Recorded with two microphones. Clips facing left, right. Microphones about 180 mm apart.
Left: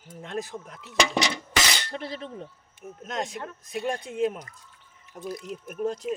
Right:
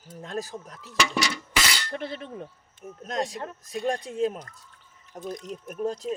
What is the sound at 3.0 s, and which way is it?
Speech, 35° right (ahead or behind).